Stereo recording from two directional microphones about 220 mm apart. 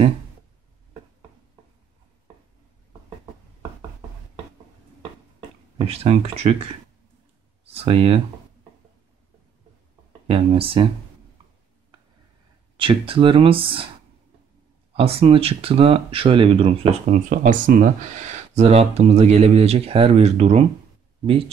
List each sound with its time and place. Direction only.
5.8 s speech: 25° right (ahead or behind)
10.2 s speech: 25° right (ahead or behind)
12.7 s speech: 25° right (ahead or behind)
15.0 s speech: 25° right (ahead or behind)